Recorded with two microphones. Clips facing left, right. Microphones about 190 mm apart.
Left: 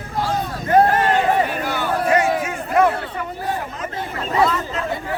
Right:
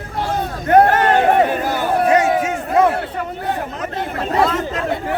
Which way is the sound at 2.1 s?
20° right (ahead or behind).